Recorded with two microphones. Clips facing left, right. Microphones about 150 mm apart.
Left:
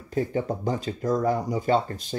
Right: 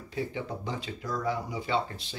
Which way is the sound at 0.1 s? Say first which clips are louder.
Left 8 dB; 45° left (ahead or behind).